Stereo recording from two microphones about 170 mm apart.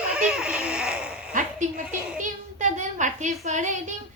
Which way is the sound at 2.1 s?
50° right (ahead or behind).